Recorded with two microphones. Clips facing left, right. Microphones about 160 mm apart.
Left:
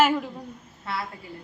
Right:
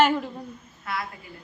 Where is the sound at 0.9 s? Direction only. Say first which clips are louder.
Even; 30° left (ahead or behind).